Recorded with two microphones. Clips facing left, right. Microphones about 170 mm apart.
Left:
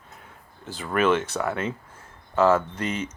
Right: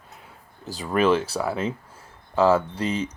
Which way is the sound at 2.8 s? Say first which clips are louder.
Right 3 dB; 30° right (ahead or behind).